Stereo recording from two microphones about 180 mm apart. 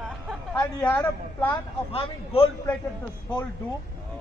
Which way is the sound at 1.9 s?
30° left (ahead or behind).